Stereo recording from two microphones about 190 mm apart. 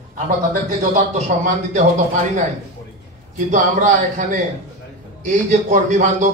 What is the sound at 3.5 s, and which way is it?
Speech, 40° right (ahead or behind).